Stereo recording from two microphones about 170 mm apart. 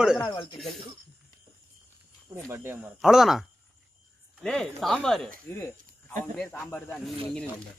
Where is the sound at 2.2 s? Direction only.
15° right (ahead or behind).